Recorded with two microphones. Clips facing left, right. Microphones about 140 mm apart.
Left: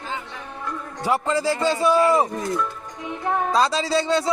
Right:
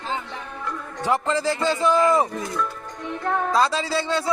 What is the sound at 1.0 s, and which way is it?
Speech, 10° left (ahead or behind).